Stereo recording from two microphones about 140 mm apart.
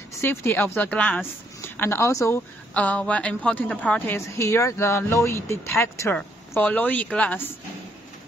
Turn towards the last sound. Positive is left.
turn(degrees=10)  # may be behind; listen again after turning